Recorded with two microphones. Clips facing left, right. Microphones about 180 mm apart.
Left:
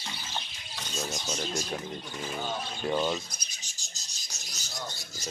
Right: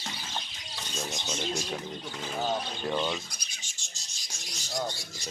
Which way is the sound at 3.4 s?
40° left (ahead or behind).